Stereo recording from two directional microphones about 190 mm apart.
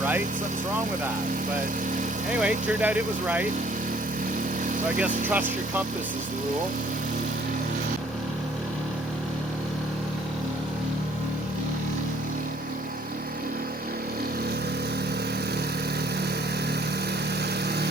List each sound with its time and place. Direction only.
2.4 s speech: 5° right (ahead or behind)
4.9 s speech: 10° right (ahead or behind)